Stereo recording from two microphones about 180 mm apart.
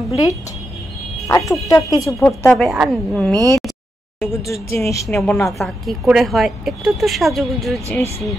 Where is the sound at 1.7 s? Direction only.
20° left (ahead or behind).